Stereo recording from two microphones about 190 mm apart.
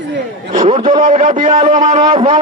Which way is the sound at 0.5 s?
35° right (ahead or behind).